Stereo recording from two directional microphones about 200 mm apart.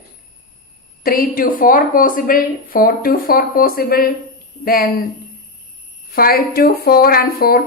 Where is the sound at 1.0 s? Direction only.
45° left (ahead or behind).